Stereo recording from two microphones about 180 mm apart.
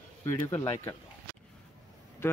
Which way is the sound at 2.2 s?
15° left (ahead or behind).